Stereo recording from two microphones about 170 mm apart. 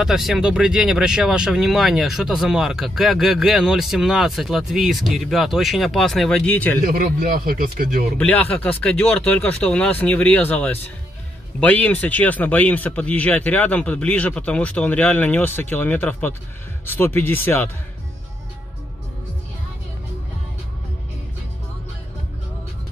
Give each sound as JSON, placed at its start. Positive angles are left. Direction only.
{"t": 0.0, "sound": "speech", "side_deg": 0}
{"t": 6.8, "sound": "a man's voice", "side_deg": -60}
{"t": 8.2, "sound": "speech", "side_deg": 10}